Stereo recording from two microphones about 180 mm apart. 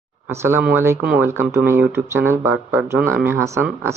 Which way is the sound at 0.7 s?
10° right (ahead or behind).